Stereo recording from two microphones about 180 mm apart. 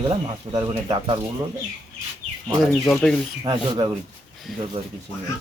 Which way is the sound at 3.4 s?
20° right (ahead or behind).